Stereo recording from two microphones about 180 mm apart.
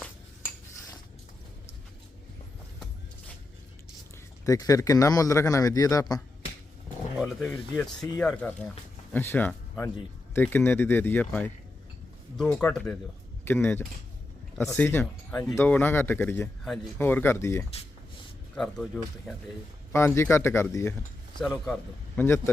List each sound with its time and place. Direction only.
4.4 s speech: 20° left (ahead or behind)
7.2 s speech: 5° left (ahead or behind)
16.6 s speech: centre (ahead or behind)
17.0 s speech: 10° left (ahead or behind)
18.5 s speech: 5° left (ahead or behind)
19.9 s speech: 15° left (ahead or behind)
21.3 s a man's voice: centre (ahead or behind)
22.2 s speech: 10° left (ahead or behind)